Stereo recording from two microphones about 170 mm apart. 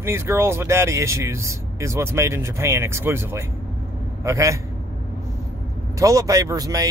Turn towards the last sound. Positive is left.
turn(degrees=-20)  # may be behind; listen again after turning